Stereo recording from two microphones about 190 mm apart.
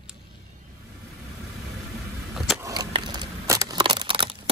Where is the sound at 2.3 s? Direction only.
Centre (ahead or behind).